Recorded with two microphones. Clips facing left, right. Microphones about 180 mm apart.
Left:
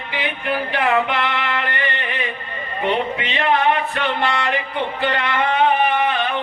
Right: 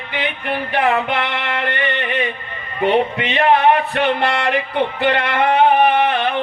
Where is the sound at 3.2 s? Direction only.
60° right (ahead or behind).